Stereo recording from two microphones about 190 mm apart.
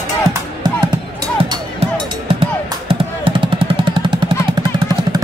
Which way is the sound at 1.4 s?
30° right (ahead or behind).